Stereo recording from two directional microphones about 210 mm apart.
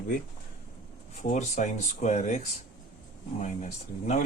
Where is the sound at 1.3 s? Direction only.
35° left (ahead or behind).